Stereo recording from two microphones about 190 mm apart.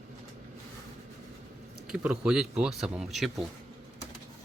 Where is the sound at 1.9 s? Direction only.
5° right (ahead or behind).